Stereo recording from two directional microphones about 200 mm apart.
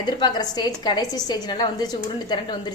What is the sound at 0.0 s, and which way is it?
A woman's voice, 20° left (ahead or behind).